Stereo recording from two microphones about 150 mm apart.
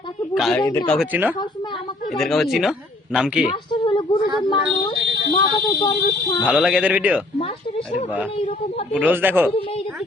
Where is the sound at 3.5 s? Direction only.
30° left (ahead or behind).